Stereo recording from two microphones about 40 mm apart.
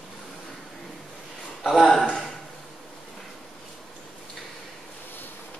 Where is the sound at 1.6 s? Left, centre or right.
Centre.